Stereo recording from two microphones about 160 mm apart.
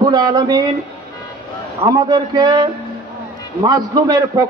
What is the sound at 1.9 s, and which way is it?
A man's voice, 25° right (ahead or behind).